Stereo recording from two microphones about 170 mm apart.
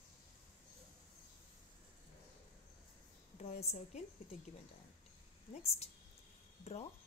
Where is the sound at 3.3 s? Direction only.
40° left (ahead or behind).